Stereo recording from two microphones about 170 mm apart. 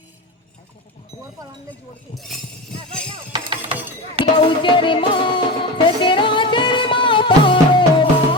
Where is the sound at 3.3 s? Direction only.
25° right (ahead or behind).